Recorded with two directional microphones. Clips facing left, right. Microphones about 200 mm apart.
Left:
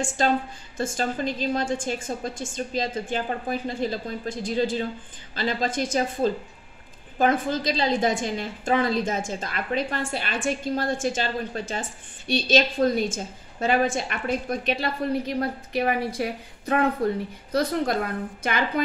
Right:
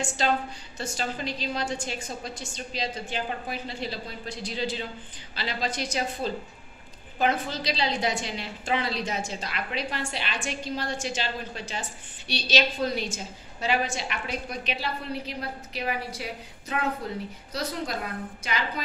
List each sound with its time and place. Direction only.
0.2 s a woman's voice: 50° left (ahead or behind)